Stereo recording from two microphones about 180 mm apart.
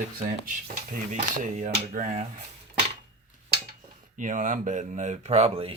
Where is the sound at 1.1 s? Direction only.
45° right (ahead or behind).